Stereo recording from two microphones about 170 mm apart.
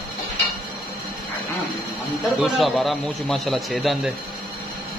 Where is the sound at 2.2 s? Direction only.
Centre (ahead or behind).